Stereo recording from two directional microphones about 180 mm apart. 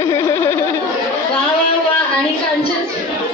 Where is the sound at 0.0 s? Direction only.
15° left (ahead or behind).